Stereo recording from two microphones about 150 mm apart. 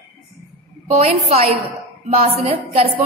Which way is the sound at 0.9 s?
45° right (ahead or behind).